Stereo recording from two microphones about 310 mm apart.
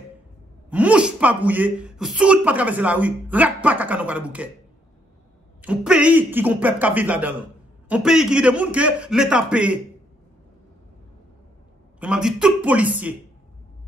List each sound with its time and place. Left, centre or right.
0.7 s speech: centre
5.6 s speech: centre
12.0 s speech: centre